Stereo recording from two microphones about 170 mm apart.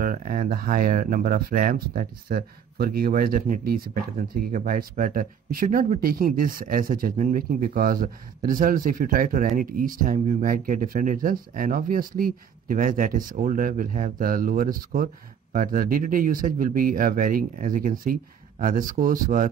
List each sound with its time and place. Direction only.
0.0 s speech: 55° right (ahead or behind)